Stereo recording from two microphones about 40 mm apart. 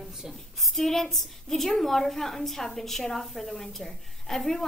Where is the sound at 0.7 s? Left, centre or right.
Centre.